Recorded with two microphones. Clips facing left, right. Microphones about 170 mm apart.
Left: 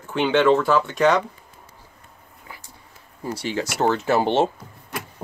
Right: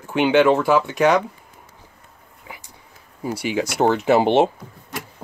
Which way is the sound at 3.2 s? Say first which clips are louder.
Right 3 dB; 10° right (ahead or behind).